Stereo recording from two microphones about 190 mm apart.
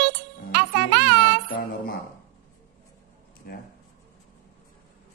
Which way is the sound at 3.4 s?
55° left (ahead or behind).